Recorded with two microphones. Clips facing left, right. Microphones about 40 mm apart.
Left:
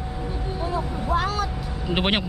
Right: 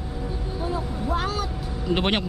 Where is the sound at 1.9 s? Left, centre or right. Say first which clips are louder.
Even; centre.